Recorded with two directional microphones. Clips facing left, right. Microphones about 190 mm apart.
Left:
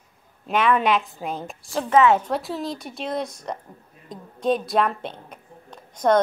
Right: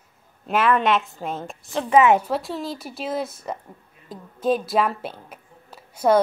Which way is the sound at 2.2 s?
Centre (ahead or behind).